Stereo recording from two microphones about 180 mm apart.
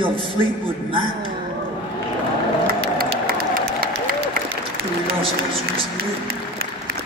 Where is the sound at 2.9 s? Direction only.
55° right (ahead or behind).